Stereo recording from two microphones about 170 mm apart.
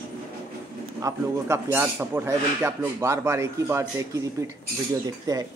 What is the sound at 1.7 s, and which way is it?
Speech, 10° right (ahead or behind).